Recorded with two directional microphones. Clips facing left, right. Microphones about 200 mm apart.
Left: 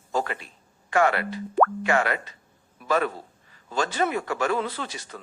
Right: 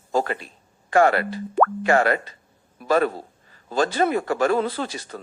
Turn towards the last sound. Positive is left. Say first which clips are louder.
# right 6 dB
turn(degrees=-35)  # may be behind; listen again after turning